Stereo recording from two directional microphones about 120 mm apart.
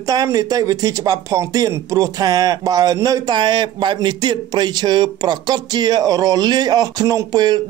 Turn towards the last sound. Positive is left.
turn(degrees=-35)  # may be behind; listen again after turning